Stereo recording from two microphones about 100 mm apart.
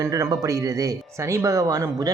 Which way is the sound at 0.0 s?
35° right (ahead or behind).